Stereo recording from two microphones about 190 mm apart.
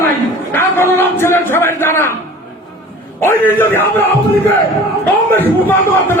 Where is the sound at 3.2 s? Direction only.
10° left (ahead or behind).